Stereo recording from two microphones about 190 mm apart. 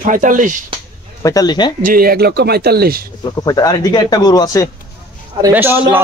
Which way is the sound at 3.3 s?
20° left (ahead or behind).